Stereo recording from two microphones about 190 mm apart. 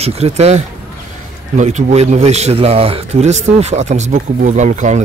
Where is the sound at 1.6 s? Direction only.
35° right (ahead or behind).